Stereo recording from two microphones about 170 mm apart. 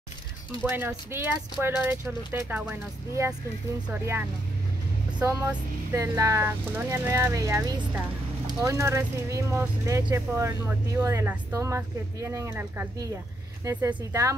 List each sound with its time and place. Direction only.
0.7 s speech: 15° right (ahead or behind)
4.0 s speech: 15° right (ahead or behind)